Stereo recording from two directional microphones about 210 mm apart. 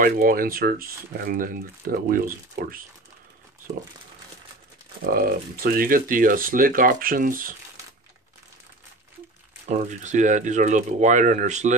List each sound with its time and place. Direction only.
0.0 s speech: 45° right (ahead or behind)
5.0 s speech: 45° right (ahead or behind)
9.7 s speech: 35° right (ahead or behind)